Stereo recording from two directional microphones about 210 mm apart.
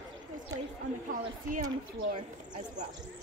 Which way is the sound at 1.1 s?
40° right (ahead or behind).